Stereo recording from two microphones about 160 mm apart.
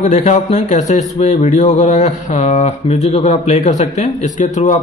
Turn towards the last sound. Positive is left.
turn(degrees=50)  # may be behind; listen again after turning